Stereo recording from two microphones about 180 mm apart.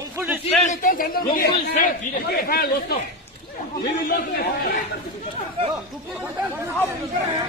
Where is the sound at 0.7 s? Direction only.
50° left (ahead or behind).